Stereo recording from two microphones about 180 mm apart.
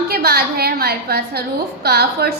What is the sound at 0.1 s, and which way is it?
A woman's voice, 60° right (ahead or behind).